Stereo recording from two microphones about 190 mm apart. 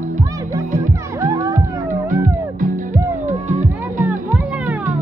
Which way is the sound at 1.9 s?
45° right (ahead or behind).